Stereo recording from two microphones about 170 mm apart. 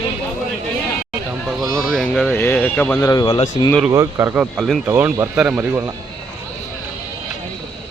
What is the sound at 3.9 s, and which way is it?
Speech, 15° right (ahead or behind).